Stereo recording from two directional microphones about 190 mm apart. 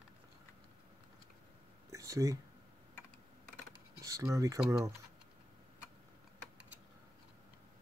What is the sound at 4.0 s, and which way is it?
Speech, 15° right (ahead or behind).